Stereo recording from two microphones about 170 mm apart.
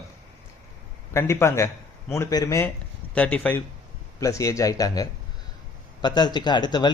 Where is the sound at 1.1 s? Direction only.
15° left (ahead or behind).